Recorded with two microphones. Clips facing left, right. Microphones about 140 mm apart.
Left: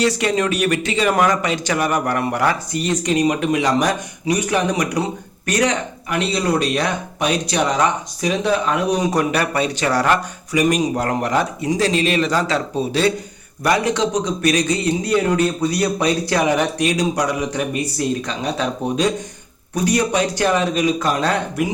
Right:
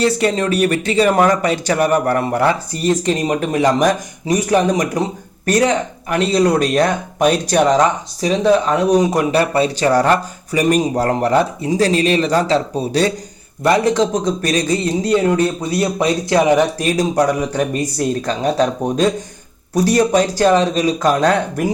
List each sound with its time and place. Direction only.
0.0 s speech: 35° right (ahead or behind)
8.2 s speech: 35° right (ahead or behind)
14.5 s speech: 30° right (ahead or behind)